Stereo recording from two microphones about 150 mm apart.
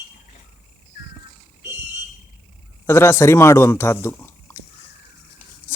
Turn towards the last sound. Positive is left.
turn(degrees=15)  # may be behind; listen again after turning